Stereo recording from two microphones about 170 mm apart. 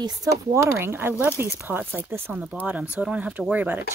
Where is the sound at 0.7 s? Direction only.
15° right (ahead or behind).